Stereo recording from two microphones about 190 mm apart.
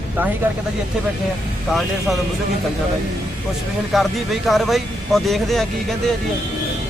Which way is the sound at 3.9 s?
Centre (ahead or behind).